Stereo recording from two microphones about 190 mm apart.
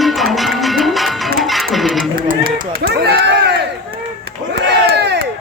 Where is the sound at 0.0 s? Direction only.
Centre (ahead or behind).